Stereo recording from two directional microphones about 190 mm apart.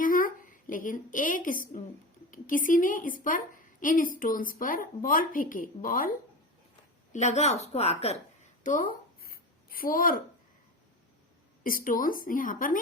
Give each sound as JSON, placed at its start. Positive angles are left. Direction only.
{"t": 0.0, "sound": "a woman's voice", "side_deg": 45}
{"t": 8.6, "sound": "a sound", "side_deg": 45}
{"t": 11.6, "sound": "a woman's voice", "side_deg": 45}